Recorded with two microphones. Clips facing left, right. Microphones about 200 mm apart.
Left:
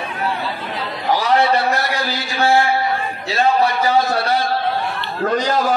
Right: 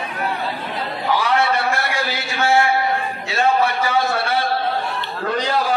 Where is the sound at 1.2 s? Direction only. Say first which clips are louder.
Left 5 dB; 40° left (ahead or behind).